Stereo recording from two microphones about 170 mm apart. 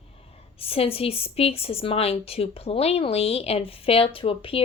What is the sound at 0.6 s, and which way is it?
A woman's voice, 35° left (ahead or behind).